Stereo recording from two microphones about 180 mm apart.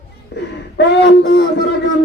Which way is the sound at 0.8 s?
75° left (ahead or behind).